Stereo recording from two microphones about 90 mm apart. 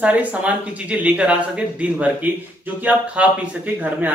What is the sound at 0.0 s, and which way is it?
Speech, 15° right (ahead or behind).